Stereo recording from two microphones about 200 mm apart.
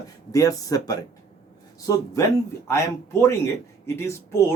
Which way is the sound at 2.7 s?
15° left (ahead or behind).